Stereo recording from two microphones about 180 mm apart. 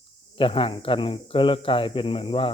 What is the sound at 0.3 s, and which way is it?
Speech, 30° left (ahead or behind).